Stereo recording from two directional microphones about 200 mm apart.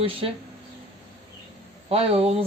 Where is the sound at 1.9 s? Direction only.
30° right (ahead or behind).